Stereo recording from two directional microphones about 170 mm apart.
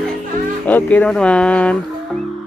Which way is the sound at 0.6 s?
10° left (ahead or behind).